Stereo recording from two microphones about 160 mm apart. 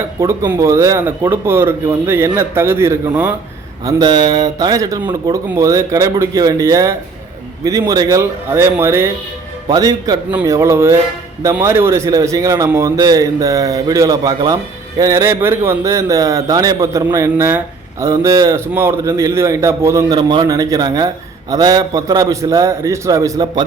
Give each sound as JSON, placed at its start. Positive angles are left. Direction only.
{"t": 0.2, "sound": "a man's voice", "side_deg": -15}